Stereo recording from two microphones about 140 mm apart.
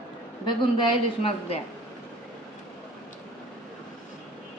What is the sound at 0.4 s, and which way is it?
Speech, 35° left (ahead or behind).